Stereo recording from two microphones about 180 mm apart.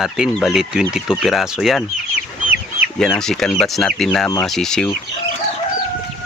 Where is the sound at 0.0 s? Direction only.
Centre (ahead or behind).